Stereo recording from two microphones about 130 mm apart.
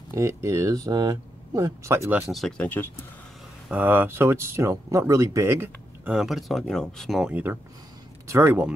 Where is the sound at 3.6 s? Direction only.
15° right (ahead or behind).